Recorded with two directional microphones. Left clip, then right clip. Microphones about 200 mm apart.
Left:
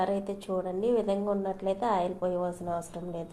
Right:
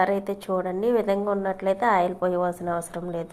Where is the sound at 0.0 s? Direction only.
20° right (ahead or behind).